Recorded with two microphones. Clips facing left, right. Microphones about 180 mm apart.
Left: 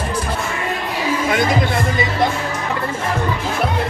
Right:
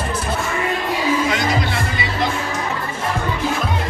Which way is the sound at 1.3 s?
50° left (ahead or behind).